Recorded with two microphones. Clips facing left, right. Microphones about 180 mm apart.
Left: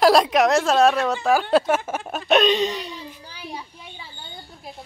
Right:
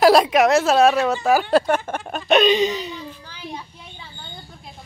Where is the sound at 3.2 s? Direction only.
15° left (ahead or behind).